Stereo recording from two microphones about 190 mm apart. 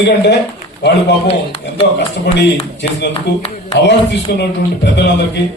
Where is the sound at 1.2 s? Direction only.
30° left (ahead or behind).